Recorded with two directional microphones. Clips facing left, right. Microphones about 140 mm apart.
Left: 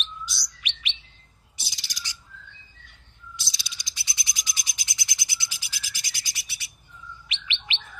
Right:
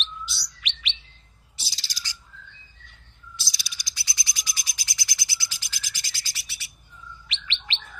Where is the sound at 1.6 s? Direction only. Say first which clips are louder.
Even; 20° left (ahead or behind).